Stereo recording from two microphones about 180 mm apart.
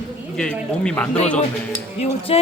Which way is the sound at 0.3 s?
5° left (ahead or behind).